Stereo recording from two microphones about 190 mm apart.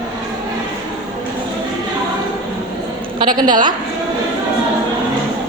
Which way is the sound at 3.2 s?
20° right (ahead or behind).